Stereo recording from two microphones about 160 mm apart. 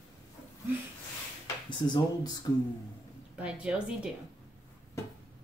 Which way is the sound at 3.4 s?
5° right (ahead or behind).